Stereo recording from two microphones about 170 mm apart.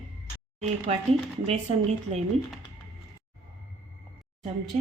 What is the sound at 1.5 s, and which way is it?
Speech, 40° right (ahead or behind).